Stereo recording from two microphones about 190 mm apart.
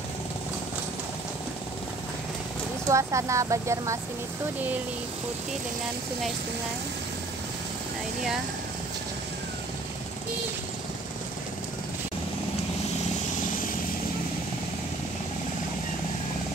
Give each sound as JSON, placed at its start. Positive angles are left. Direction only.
{"t": 2.9, "sound": "speech", "side_deg": -15}